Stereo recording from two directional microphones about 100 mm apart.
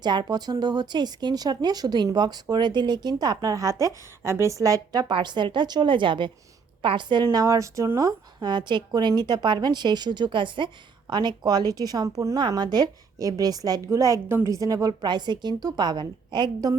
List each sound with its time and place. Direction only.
0.0 s speech: 45° right (ahead or behind)
7.3 s a woman's voice: 30° right (ahead or behind)
12.4 s a woman's voice: 45° right (ahead or behind)